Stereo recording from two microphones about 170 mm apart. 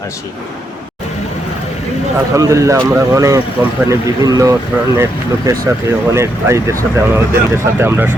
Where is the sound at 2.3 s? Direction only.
20° right (ahead or behind).